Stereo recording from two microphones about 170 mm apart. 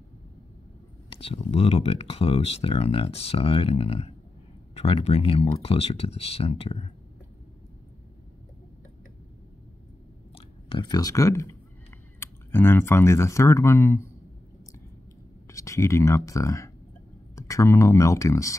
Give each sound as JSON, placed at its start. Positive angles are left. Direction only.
{"t": 1.1, "sound": "speech", "side_deg": 35}
{"t": 10.3, "sound": "speech", "side_deg": 30}
{"t": 15.4, "sound": "speech", "side_deg": 20}